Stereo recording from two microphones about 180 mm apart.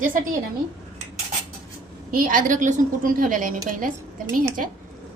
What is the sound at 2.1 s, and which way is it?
A woman's voice, 50° right (ahead or behind).